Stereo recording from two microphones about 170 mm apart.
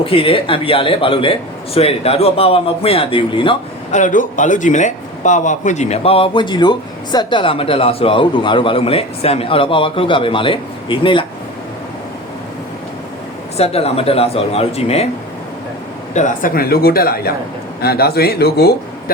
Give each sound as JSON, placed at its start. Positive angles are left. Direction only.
{"t": 0.0, "sound": "a man's voice", "side_deg": 35}
{"t": 3.9, "sound": "a man's voice", "side_deg": 50}
{"t": 13.6, "sound": "a man's voice", "side_deg": 35}
{"t": 16.1, "sound": "speech", "side_deg": 50}